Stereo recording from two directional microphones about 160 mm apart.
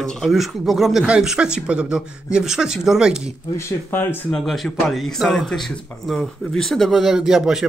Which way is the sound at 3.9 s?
15° left (ahead or behind).